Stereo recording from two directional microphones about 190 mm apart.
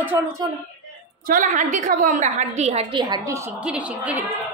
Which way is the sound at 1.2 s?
45° right (ahead or behind).